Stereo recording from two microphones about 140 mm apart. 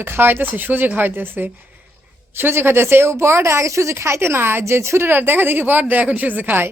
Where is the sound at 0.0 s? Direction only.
15° right (ahead or behind).